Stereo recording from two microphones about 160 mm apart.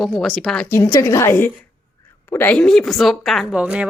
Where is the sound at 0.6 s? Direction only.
15° left (ahead or behind).